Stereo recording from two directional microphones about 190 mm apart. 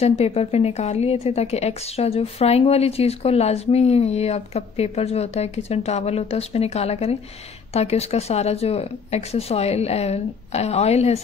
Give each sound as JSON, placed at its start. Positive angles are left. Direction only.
{"t": 0.0, "sound": "a woman's voice", "side_deg": 35}